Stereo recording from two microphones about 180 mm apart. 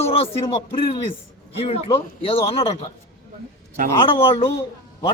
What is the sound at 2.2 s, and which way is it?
Speech, 30° left (ahead or behind).